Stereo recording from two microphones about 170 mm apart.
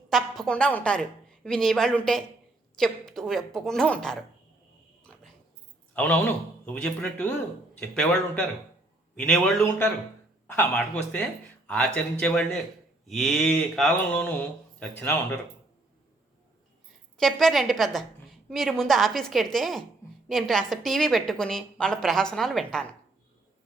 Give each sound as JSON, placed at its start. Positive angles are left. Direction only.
{"t": 0.1, "sound": "a woman's voice", "side_deg": 0}
{"t": 5.1, "sound": "dog", "side_deg": 5}
{"t": 5.9, "sound": "a man's voice", "side_deg": 10}
{"t": 17.2, "sound": "a woman's voice", "side_deg": 0}